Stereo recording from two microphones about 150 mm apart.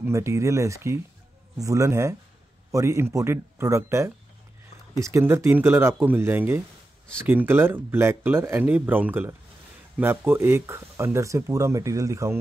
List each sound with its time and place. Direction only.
0.0 s speech: 20° right (ahead or behind)